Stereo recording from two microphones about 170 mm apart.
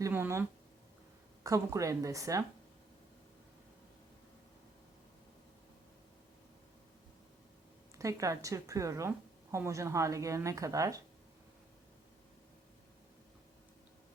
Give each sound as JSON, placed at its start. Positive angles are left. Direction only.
{"t": 0.0, "sound": "speech", "side_deg": -15}
{"t": 1.5, "sound": "a woman's voice", "side_deg": -20}
{"t": 7.9, "sound": "a woman's voice", "side_deg": -20}